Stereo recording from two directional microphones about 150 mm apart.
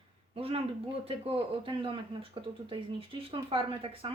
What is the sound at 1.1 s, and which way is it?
Speech, 40° right (ahead or behind).